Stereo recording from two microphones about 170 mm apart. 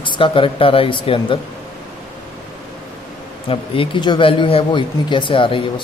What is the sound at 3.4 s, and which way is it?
Speech, 30° left (ahead or behind).